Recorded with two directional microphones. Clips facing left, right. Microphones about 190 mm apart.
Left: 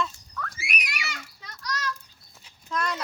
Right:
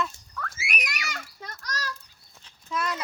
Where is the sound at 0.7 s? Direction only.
45° right (ahead or behind).